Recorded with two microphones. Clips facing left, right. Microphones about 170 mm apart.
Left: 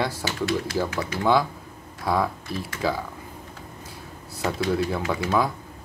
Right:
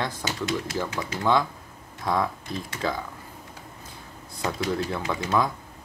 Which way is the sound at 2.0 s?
5° left (ahead or behind).